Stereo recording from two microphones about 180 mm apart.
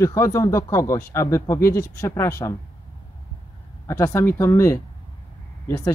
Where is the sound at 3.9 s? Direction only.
15° left (ahead or behind).